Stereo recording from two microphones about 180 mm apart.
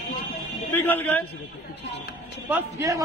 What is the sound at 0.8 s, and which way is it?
Speech, 10° left (ahead or behind).